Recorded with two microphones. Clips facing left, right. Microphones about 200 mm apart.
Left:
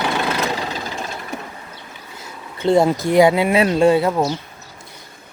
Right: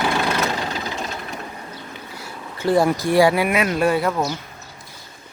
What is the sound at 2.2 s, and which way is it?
Speech, 25° left (ahead or behind).